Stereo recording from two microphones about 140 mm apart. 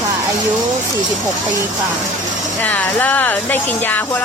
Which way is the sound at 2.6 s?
10° left (ahead or behind).